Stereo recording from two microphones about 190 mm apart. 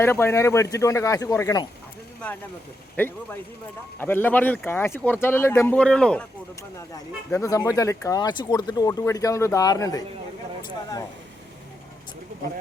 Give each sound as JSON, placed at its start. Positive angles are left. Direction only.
{"t": 0.0, "sound": "speech", "side_deg": 15}
{"t": 2.9, "sound": "speech", "side_deg": 10}